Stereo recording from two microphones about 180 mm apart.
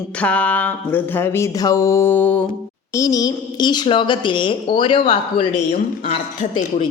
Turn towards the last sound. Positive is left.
turn(degrees=40)  # may be behind; listen again after turning